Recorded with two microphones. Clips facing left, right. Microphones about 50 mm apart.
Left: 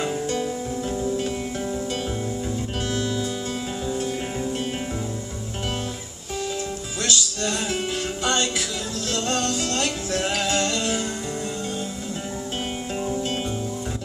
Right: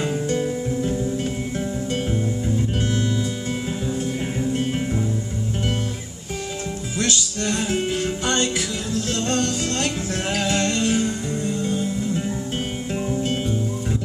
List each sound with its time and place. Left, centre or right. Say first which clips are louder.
2.4 s music: right 4 dB; right
7.0 s music: right 1 dB; right